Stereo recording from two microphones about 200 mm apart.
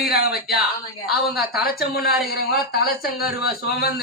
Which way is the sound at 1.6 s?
50° left (ahead or behind).